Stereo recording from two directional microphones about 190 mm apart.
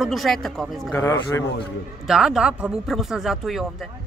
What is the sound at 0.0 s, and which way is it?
Speech, centre (ahead or behind).